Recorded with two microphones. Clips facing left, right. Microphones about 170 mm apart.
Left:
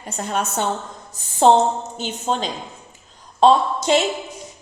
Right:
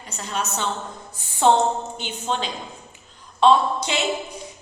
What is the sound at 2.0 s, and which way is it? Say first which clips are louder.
A woman's voice: left 3 dB; 40° left (ahead or behind).